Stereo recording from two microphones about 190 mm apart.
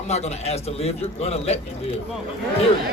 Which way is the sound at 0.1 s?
35° left (ahead or behind).